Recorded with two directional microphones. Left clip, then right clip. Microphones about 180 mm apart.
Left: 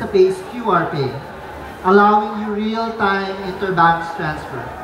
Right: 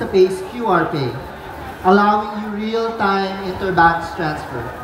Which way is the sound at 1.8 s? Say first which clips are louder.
Left 2 dB; 45° right (ahead or behind).